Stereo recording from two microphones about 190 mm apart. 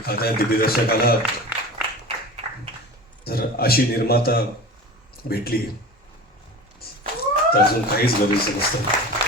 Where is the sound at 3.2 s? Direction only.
55° left (ahead or behind).